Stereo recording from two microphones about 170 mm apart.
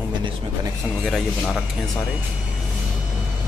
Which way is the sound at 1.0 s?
Centre (ahead or behind).